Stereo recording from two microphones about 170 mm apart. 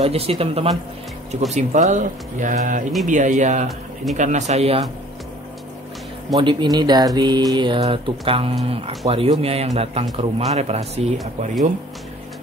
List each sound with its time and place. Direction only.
0.0 s speech: 35° right (ahead or behind)
6.3 s mantra: 25° right (ahead or behind)
8.6 s speech: 35° right (ahead or behind)